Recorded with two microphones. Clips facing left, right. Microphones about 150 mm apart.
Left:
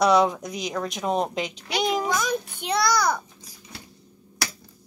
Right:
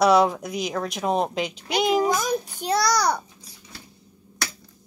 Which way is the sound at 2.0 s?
30° right (ahead or behind).